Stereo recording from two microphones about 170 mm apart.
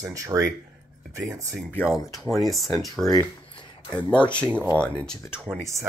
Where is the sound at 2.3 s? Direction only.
Centre (ahead or behind).